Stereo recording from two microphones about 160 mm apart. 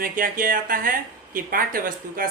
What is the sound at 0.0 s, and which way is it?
Speech, 60° right (ahead or behind).